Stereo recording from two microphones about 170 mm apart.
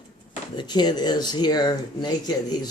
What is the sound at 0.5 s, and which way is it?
Speech, 25° left (ahead or behind).